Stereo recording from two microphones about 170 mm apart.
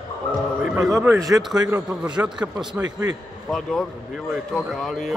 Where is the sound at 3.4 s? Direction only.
5° left (ahead or behind).